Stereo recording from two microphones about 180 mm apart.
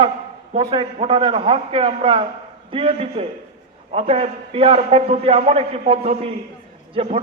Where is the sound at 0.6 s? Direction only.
30° right (ahead or behind).